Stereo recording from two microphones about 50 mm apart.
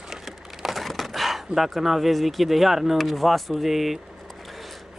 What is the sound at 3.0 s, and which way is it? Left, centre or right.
Speech, centre.